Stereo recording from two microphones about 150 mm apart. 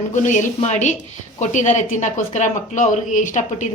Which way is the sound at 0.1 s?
55° left (ahead or behind).